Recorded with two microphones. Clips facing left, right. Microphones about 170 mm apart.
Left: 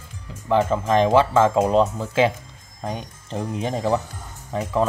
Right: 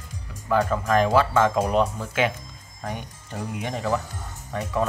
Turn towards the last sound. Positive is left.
turn(degrees=30)  # may be behind; listen again after turning